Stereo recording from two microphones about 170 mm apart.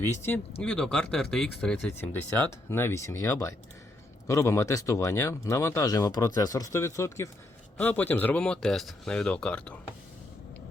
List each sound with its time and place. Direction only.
0.0 s speech: 15° left (ahead or behind)